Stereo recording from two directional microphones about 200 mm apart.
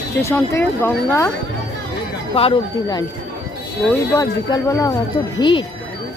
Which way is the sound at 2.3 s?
25° left (ahead or behind).